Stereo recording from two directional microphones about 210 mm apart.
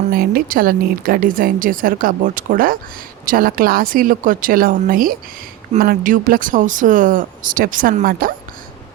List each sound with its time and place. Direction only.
0.1 s speech: 45° right (ahead or behind)